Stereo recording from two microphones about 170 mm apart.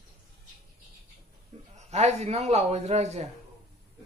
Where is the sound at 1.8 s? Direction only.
40° right (ahead or behind).